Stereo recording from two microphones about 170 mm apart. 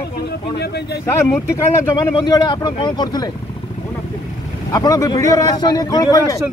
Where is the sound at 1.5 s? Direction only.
25° left (ahead or behind).